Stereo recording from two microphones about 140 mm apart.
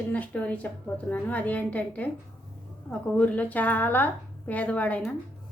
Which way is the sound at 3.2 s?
10° left (ahead or behind).